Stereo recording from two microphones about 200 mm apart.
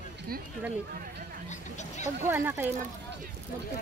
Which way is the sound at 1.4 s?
35° left (ahead or behind).